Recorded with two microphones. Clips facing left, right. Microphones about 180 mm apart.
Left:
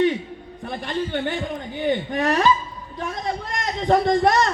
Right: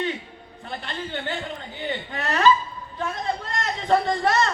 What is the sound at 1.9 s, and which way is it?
Speech, 15° left (ahead or behind).